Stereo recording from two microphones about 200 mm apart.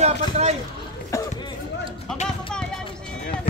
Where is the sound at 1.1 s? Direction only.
15° left (ahead or behind).